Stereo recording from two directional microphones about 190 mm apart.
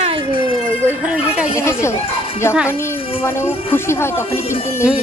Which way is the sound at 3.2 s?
10° left (ahead or behind).